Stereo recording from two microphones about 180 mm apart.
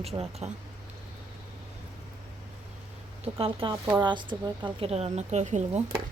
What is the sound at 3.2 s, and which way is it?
Speech, 30° right (ahead or behind).